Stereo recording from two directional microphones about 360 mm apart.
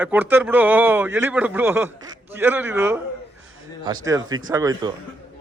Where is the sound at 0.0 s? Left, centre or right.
Centre.